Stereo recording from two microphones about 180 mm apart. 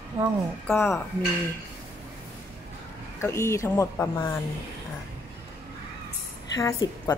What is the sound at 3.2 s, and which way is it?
A woman's voice, 15° left (ahead or behind).